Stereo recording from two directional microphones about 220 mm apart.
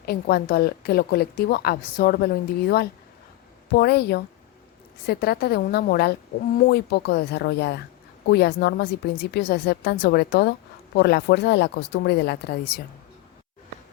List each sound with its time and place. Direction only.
0.0 s a woman's voice: 45° left (ahead or behind)